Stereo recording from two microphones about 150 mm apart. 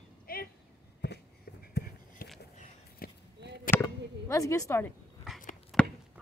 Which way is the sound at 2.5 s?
55° left (ahead or behind).